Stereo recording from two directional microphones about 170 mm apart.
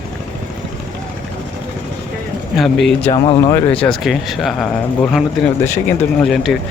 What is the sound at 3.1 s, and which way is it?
Speech, 20° left (ahead or behind).